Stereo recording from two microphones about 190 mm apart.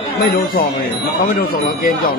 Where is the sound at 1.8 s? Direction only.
50° left (ahead or behind).